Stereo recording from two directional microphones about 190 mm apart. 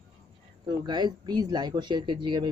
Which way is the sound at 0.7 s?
20° right (ahead or behind).